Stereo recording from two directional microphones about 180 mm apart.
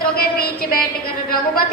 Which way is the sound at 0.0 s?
55° left (ahead or behind).